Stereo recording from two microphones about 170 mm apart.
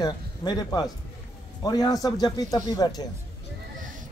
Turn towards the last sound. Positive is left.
turn(degrees=20)  # may be behind; listen again after turning